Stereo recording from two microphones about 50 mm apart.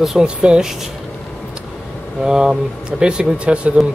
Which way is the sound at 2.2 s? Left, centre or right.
Centre.